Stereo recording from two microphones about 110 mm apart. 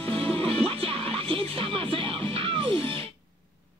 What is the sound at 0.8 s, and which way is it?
Music, 55° right (ahead or behind).